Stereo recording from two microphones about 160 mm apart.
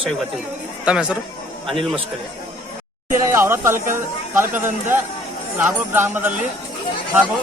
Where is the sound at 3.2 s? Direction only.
15° right (ahead or behind).